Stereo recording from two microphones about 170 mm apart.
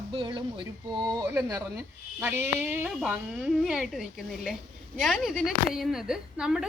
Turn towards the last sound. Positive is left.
turn(degrees=-5)  # may be behind; listen again after turning